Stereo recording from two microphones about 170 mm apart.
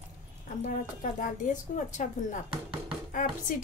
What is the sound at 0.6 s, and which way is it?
A woman's voice, 50° left (ahead or behind).